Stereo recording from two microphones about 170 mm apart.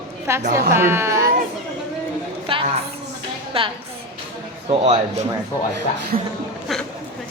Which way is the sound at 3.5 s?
35° right (ahead or behind).